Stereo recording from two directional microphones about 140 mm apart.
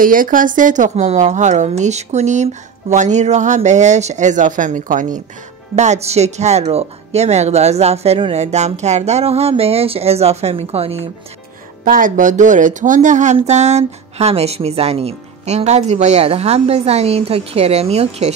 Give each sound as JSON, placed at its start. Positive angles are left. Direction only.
{"t": 0.0, "sound": "speech", "side_deg": -80}
{"t": 5.8, "sound": "speech", "side_deg": -55}
{"t": 11.8, "sound": "speech", "side_deg": -80}